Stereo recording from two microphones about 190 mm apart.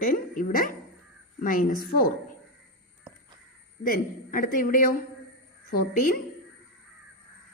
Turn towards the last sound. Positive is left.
turn(degrees=50)  # may be behind; listen again after turning